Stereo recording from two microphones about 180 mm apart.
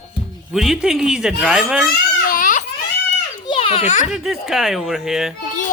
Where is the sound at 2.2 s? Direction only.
50° left (ahead or behind).